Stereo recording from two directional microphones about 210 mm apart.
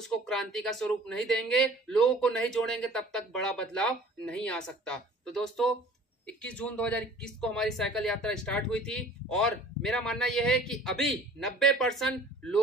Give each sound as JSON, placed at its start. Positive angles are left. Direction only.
{"t": 0.0, "sound": "speech", "side_deg": 0}